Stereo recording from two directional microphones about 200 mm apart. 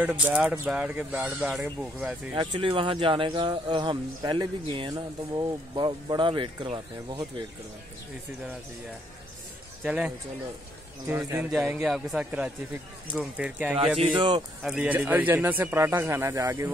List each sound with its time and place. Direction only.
0.0 s speech: 5° right (ahead or behind)
2.3 s speech: 25° right (ahead or behind)
9.8 s speech: 5° right (ahead or behind)
13.9 s speech: 25° right (ahead or behind)
14.6 s speech: 5° right (ahead or behind)